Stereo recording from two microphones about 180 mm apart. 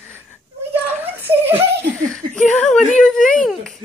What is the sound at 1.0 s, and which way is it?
Speech, 10° right (ahead or behind).